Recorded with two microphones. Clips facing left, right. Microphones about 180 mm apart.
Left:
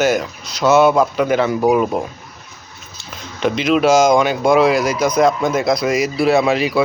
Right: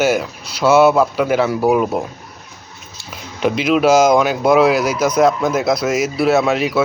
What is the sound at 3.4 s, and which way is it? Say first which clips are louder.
Speech: even; 5° right (ahead or behind).